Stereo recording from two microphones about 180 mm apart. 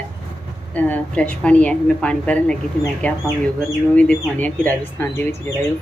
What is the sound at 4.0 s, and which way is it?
Speech, 5° left (ahead or behind).